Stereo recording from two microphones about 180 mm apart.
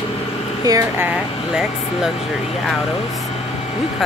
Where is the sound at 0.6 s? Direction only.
20° right (ahead or behind).